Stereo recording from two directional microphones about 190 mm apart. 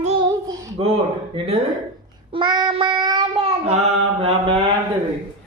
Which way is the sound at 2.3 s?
25° right (ahead or behind).